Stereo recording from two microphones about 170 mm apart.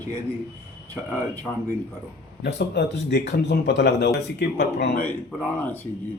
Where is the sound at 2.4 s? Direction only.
75° left (ahead or behind).